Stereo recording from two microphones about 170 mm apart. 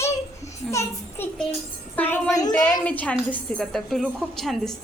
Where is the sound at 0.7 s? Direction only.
15° left (ahead or behind).